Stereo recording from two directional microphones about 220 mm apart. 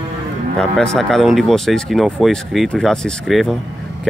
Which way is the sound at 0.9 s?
Centre (ahead or behind).